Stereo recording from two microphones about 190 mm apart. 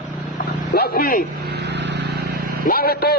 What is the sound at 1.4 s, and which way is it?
Vehicle, 60° right (ahead or behind).